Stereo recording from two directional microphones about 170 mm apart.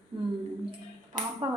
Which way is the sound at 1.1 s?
50° right (ahead or behind).